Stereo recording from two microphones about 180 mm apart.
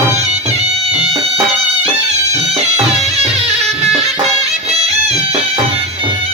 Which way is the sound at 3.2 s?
35° right (ahead or behind).